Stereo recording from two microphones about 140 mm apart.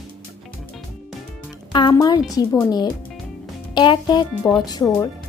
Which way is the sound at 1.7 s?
30° left (ahead or behind).